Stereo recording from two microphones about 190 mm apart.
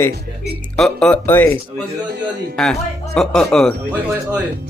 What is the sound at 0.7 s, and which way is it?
Speech, 5° left (ahead or behind).